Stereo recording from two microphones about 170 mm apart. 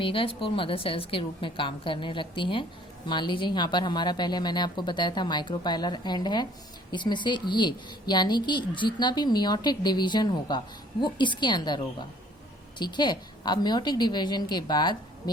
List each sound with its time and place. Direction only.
0.0 s a woman's voice: 30° left (ahead or behind)
12.8 s a woman's voice: 25° left (ahead or behind)